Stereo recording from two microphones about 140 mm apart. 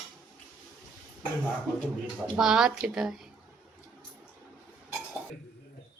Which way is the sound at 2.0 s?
5° right (ahead or behind).